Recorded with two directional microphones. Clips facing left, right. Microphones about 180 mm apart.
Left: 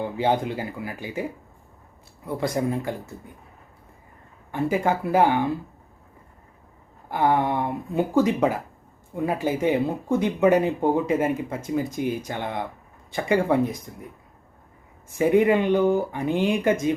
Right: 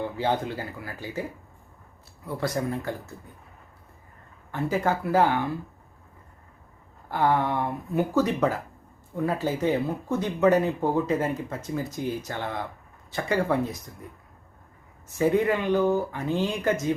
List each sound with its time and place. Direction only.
0.2 s speech: 15° left (ahead or behind)
2.2 s speech: 25° left (ahead or behind)
4.7 s speech: 15° left (ahead or behind)
7.1 s speech: 15° left (ahead or behind)
15.2 s speech: 15° left (ahead or behind)